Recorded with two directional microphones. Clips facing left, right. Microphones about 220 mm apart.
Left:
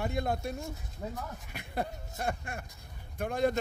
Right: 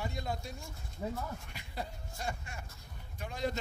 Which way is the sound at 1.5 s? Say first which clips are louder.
Left 7 dB; 55° left (ahead or behind).